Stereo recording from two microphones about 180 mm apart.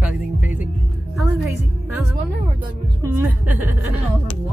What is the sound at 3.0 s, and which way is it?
Speech, 10° right (ahead or behind).